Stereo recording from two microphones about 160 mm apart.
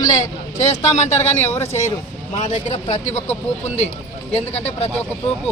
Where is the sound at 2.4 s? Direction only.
45° left (ahead or behind).